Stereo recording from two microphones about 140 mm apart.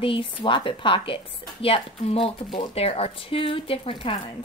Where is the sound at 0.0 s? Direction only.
40° left (ahead or behind).